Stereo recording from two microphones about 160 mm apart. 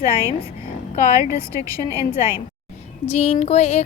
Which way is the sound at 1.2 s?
20° right (ahead or behind).